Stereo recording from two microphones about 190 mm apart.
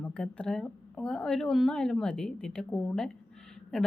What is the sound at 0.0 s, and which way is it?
Speech, 5° left (ahead or behind).